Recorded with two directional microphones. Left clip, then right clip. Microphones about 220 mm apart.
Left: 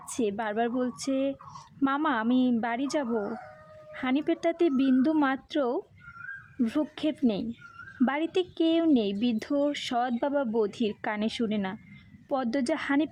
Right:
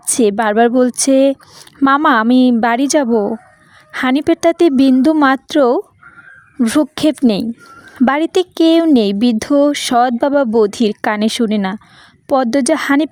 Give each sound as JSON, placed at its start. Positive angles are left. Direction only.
{"t": 0.0, "sound": "speech", "side_deg": -40}